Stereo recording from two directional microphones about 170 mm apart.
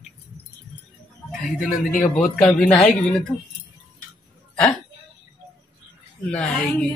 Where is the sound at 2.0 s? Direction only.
5° left (ahead or behind).